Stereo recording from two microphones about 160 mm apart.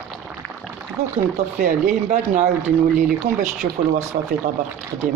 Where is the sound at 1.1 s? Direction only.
55° right (ahead or behind).